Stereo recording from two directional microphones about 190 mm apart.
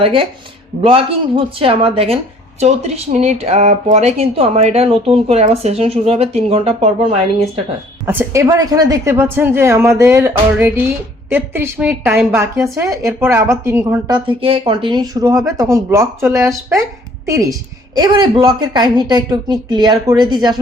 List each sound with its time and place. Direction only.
0.0 s a woman's voice: 30° right (ahead or behind)
8.0 s a woman's voice: 15° right (ahead or behind)
14.1 s a woman's voice: 30° right (ahead or behind)